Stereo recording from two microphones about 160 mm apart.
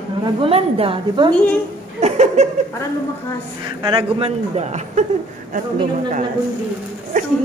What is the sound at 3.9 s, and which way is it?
A woman's voice, 35° right (ahead or behind).